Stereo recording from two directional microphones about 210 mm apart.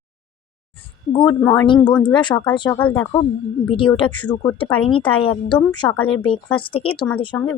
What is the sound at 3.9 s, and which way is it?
Speech, 20° left (ahead or behind).